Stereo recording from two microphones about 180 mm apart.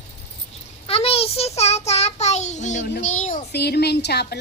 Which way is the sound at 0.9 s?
35° left (ahead or behind).